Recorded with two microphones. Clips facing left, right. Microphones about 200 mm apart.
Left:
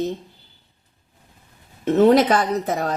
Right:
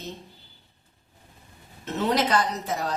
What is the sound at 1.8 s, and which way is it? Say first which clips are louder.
Speech: left 11 dB; 55° left (ahead or behind).